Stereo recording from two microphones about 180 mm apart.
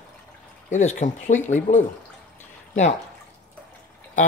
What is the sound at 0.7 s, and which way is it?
Speech, 40° left (ahead or behind).